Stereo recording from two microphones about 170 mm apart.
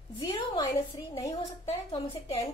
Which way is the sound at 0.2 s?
30° left (ahead or behind).